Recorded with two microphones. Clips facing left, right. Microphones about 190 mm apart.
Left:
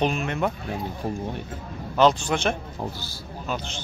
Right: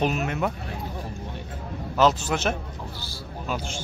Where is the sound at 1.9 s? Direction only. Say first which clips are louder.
Left 2 dB; 5° right (ahead or behind).